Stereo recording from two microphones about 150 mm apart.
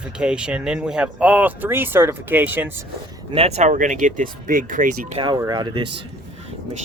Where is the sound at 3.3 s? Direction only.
40° right (ahead or behind); by 4.9 s 65° right (ahead or behind).